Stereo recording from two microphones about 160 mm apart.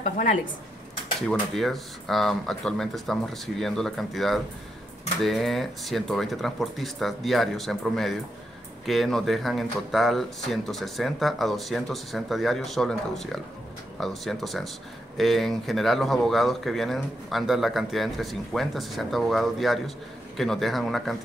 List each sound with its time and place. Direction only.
0.0 s speech: 55° left (ahead or behind)
1.5 s speech: centre (ahead or behind)